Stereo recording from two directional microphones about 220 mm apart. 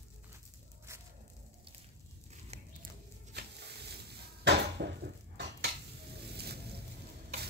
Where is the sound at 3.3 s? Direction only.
50° right (ahead or behind).